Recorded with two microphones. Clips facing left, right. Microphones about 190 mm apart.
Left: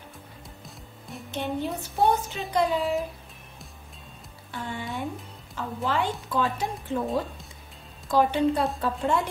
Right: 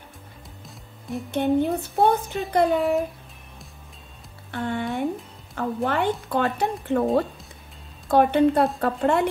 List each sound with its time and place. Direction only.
0.7 s music: centre (ahead or behind)
1.3 s a woman's voice: 55° right (ahead or behind)
4.5 s a woman's voice: 60° right (ahead or behind)
8.1 s a woman's voice: 60° right (ahead or behind)